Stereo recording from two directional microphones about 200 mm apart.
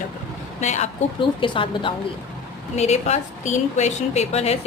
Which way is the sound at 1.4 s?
25° left (ahead or behind).